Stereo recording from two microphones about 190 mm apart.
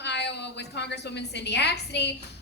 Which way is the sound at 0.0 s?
65° left (ahead or behind).